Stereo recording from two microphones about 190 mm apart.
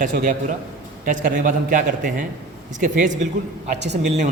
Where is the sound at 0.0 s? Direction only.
45° right (ahead or behind).